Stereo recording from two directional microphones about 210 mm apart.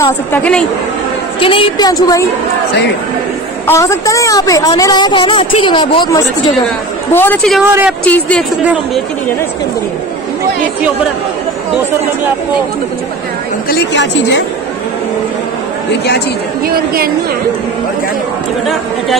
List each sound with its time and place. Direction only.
0.0 s a woman's voice: 10° left (ahead or behind)
1.4 s a woman's voice: 25° left (ahead or behind)
3.6 s a woman's voice: 15° left (ahead or behind)
13.7 s a woman's voice: 55° left (ahead or behind)
16.6 s a woman's voice: 45° right (ahead or behind)